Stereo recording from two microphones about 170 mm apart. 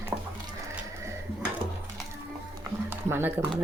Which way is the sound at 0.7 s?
15° right (ahead or behind).